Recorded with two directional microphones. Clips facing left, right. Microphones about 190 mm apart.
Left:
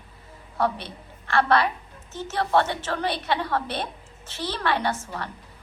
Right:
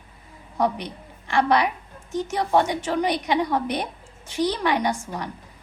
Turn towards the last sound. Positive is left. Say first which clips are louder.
# right 2 dB
turn(degrees=-15)  # may be behind; listen again after turning